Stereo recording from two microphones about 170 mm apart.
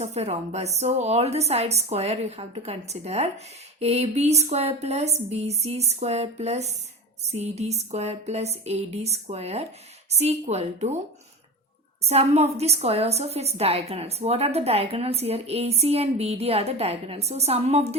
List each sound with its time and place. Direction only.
0.0 s a woman's voice: 40° right (ahead or behind)
12.0 s a woman's voice: 40° right (ahead or behind)